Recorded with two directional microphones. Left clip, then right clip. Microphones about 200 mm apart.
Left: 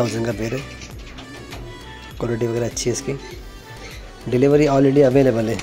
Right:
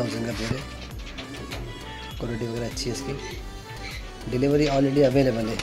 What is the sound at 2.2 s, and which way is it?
Speech, 15° left (ahead or behind).